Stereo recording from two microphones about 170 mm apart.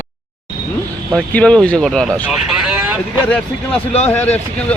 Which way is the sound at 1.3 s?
5° left (ahead or behind).